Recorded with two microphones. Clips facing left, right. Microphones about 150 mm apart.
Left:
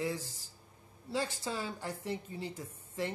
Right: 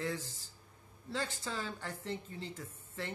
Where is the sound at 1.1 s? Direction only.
15° left (ahead or behind).